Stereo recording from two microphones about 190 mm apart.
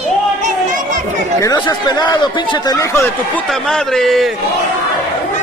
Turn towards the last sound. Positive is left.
turn(degrees=0)  # may be behind; listen again after turning